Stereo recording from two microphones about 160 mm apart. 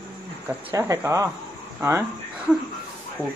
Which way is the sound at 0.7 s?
20° right (ahead or behind).